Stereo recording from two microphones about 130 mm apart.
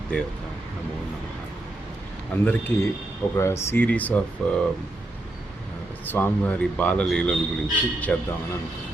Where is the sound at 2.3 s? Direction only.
15° left (ahead or behind).